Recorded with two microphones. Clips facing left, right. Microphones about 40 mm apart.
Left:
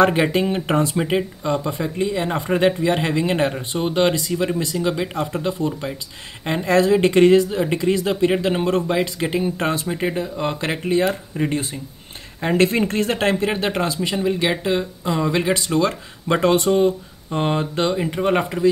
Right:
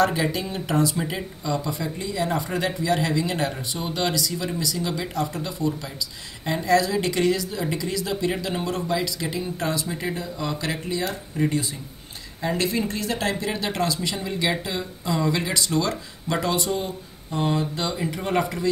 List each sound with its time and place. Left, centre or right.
0.0 s speech: left
12.4 s speech: left
16.3 s speech: left